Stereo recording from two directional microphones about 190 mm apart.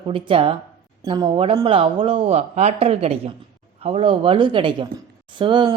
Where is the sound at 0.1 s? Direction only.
30° right (ahead or behind).